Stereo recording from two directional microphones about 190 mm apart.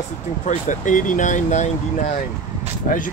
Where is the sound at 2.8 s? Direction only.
45° left (ahead or behind).